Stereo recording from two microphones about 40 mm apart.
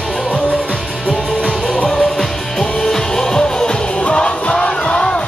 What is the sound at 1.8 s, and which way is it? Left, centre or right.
Music, centre.